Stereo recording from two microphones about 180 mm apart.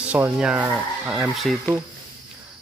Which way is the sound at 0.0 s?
10° right (ahead or behind).